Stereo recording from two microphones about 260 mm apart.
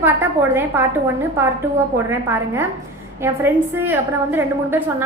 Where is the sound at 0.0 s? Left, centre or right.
Centre.